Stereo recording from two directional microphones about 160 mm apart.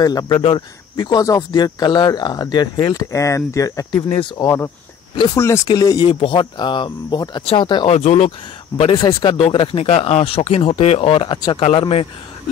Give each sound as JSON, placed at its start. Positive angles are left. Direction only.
{"t": 0.0, "sound": "speech", "side_deg": 25}
{"t": 5.1, "sound": "speech", "side_deg": 25}
{"t": 5.4, "sound": "speech", "side_deg": 15}
{"t": 8.9, "sound": "speech", "side_deg": 25}